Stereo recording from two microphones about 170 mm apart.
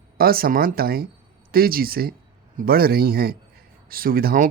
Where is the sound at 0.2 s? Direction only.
60° right (ahead or behind).